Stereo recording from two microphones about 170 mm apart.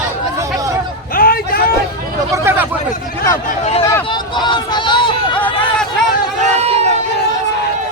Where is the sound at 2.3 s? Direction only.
15° right (ahead or behind).